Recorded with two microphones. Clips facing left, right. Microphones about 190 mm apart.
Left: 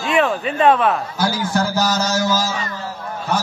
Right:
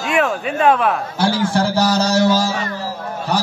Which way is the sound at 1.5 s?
30° right (ahead or behind).